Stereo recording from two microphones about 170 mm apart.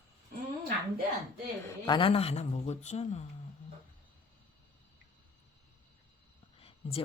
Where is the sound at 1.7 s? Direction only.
25° left (ahead or behind); by 3.2 s 40° left (ahead or behind).